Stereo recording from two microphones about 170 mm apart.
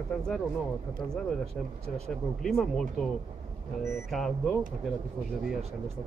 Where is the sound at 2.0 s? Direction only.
Centre (ahead or behind).